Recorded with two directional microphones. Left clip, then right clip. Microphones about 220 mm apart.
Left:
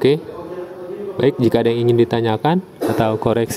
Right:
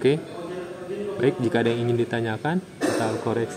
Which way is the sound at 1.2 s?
30° left (ahead or behind).